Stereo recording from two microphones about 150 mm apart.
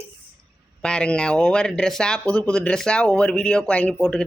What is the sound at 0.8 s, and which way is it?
Speech, 5° left (ahead or behind).